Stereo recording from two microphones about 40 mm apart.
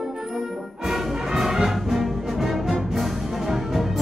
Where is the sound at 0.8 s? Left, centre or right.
Centre.